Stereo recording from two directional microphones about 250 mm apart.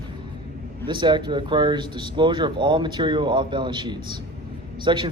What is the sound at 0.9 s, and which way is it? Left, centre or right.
Speech, centre.